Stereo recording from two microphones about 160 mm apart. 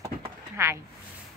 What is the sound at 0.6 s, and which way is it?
Speech, 15° right (ahead or behind).